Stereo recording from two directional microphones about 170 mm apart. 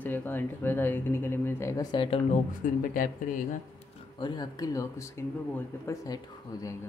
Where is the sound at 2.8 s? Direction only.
55° left (ahead or behind).